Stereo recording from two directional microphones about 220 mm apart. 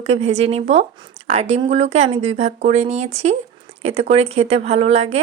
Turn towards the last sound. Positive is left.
turn(degrees=-30)  # may be behind; listen again after turning